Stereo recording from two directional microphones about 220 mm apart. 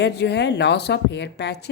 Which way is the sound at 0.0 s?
50° left (ahead or behind).